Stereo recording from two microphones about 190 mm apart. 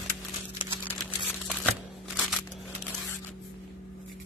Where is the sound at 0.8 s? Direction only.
Centre (ahead or behind).